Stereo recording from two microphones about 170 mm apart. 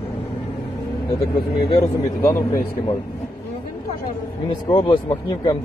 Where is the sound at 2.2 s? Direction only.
15° left (ahead or behind).